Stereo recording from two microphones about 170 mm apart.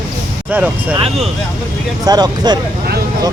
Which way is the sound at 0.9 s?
35° right (ahead or behind).